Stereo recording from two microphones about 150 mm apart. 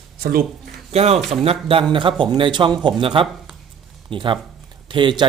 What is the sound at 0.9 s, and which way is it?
A man's voice, 45° right (ahead or behind).